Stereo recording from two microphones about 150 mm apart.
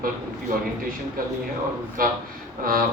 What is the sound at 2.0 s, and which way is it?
Speech, 70° right (ahead or behind).